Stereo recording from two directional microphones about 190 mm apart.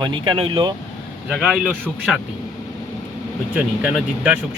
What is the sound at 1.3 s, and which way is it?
Speech, 5° right (ahead or behind).